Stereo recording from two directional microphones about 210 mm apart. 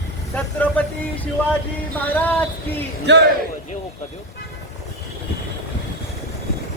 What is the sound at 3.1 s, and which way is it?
Speech, 55° right (ahead or behind).